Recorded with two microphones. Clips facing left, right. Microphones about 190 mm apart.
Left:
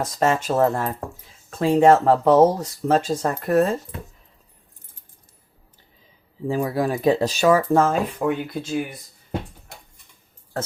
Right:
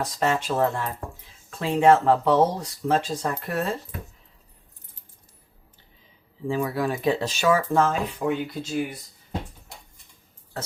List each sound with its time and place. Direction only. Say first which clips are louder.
0.0 s speech: left 4 dB; 45° left (ahead or behind)
6.5 s speech: left 3 dB; 40° left (ahead or behind)